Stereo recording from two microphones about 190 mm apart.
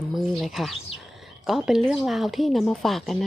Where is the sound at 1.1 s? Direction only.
Centre (ahead or behind).